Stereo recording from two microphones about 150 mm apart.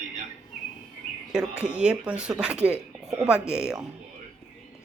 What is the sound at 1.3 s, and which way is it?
Speech, 5° right (ahead or behind).